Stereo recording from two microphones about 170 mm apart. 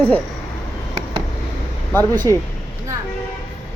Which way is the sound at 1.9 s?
10° left (ahead or behind).